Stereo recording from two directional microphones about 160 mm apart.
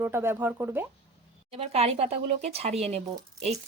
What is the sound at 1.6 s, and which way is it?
Speech, 40° right (ahead or behind).